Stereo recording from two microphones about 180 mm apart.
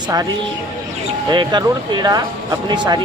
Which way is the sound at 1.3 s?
25° right (ahead or behind).